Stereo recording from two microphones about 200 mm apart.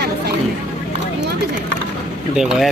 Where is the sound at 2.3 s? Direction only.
5° right (ahead or behind).